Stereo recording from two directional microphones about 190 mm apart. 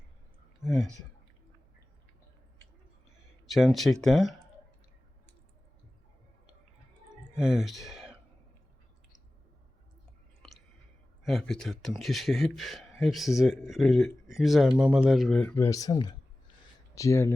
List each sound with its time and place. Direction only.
3.4 s speech: centre (ahead or behind)
7.3 s speech: 5° right (ahead or behind)
11.2 s speech: centre (ahead or behind)
15.5 s speech: 15° left (ahead or behind)